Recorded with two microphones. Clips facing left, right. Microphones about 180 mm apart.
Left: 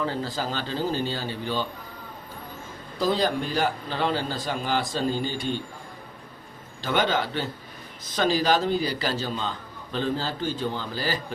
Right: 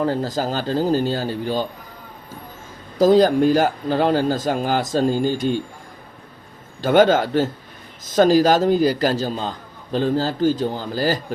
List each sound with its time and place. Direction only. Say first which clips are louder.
0.0 s speech: right 7 dB; 40° right (ahead or behind)
3.0 s a man's voice: right 11 dB; 45° right (ahead or behind)
6.8 s a man's voice: right 10 dB; 45° right (ahead or behind)